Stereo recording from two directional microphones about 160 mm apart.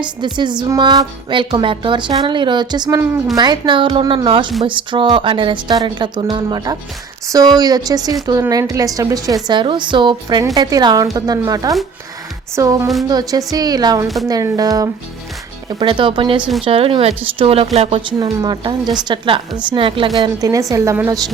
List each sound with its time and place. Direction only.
0.3 s a woman's voice: 30° right (ahead or behind)
16.4 s speech: centre (ahead or behind)
16.6 s speech: 35° right (ahead or behind)
18.2 s a woman's voice: 25° right (ahead or behind)